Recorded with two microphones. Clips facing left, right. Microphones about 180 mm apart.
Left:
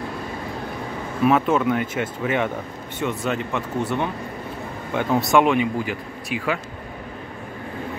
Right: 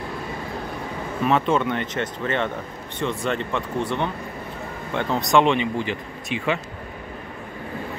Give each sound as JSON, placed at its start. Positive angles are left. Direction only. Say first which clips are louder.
{"t": 1.2, "sound": "speech", "louder": "left 2 dB", "side_deg": 5}